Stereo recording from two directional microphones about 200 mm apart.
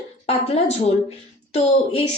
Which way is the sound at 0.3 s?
30° left (ahead or behind).